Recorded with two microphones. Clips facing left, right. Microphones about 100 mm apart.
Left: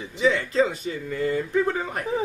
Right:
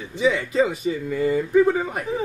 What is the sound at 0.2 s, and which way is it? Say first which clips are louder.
Speech: right 1 dB; 5° right (ahead or behind).